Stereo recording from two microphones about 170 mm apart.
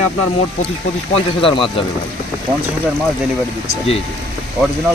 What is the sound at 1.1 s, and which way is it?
Speech, 30° left (ahead or behind).